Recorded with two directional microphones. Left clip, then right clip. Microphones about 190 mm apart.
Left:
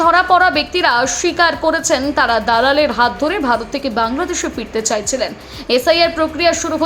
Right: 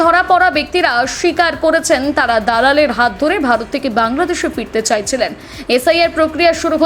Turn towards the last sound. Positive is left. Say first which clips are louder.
# right 3 dB
turn(degrees=-15)  # may be behind; listen again after turning